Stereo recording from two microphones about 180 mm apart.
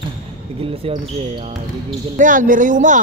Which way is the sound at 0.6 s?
30° right (ahead or behind).